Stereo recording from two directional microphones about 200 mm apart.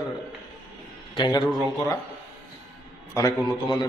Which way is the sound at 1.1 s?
20° left (ahead or behind).